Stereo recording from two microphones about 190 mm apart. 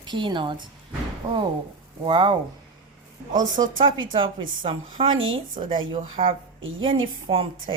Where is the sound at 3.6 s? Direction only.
30° right (ahead or behind).